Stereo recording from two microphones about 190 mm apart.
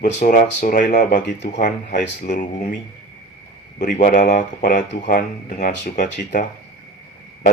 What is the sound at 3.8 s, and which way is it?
Speech, 40° left (ahead or behind).